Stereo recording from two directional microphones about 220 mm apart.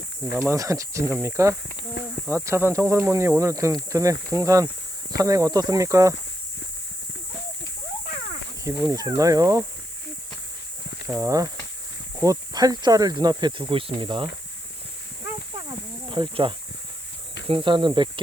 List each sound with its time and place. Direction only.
0.3 s speech: 15° right (ahead or behind)
2.0 s speech: 50° left (ahead or behind)
2.3 s speech: 10° right (ahead or behind)
8.8 s speech: 15° right (ahead or behind)
11.0 s speech: 15° right (ahead or behind)
16.0 s speech: 20° right (ahead or behind)